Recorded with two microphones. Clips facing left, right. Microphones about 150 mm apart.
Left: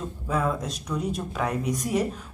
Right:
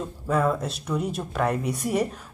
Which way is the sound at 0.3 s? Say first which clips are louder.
Right 3 dB; 5° right (ahead or behind).